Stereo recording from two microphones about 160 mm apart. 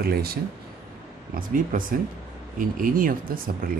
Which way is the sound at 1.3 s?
60° right (ahead or behind).